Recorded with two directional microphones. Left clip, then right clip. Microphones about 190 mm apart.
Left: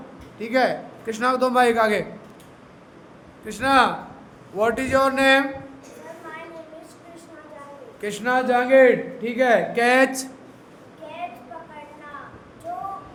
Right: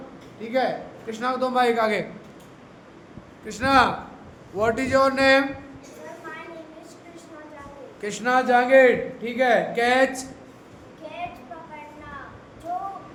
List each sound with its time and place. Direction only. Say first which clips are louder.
0.3 s a man's voice: left 3 dB; 45° left (ahead or behind); by 2.0 s 25° left (ahead or behind)
3.4 s speech: left 1 dB; 10° left (ahead or behind)
8.0 s a man's voice: even; 10° left (ahead or behind); by 10.2 s 45° left (ahead or behind)